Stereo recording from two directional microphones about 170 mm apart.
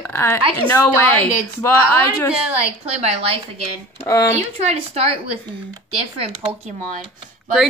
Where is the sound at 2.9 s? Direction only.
40° right (ahead or behind).